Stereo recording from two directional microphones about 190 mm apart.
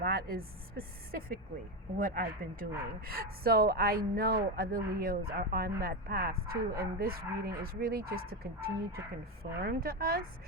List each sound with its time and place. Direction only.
0.0 s speech: 50° right (ahead or behind)